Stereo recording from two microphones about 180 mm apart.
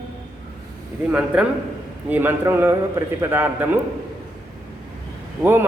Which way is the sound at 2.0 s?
10° right (ahead or behind).